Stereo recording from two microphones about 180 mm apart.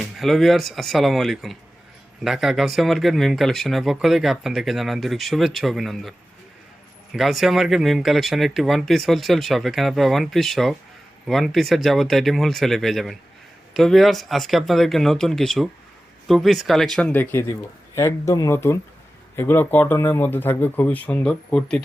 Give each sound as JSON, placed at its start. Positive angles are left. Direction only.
{"t": 0.0, "sound": "speech", "side_deg": 0}